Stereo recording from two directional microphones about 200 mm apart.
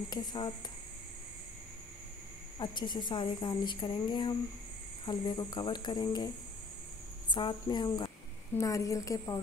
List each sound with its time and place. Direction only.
0.1 s speech: 20° left (ahead or behind)
2.6 s a woman's voice: 20° left (ahead or behind)